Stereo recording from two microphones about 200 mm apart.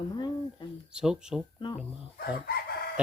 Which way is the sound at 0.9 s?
5° right (ahead or behind).